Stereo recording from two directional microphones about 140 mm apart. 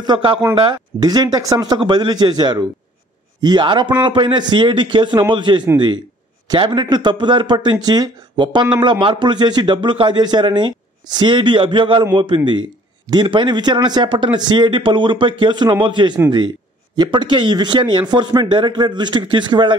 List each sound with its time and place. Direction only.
0.0 s speech: 35° right (ahead or behind)